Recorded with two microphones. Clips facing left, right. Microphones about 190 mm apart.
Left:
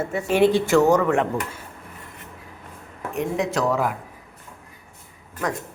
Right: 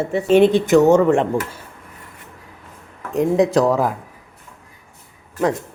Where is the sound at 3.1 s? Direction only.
35° right (ahead or behind).